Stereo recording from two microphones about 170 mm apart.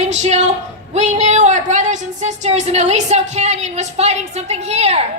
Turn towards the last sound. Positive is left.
turn(degrees=-40)  # may be behind; listen again after turning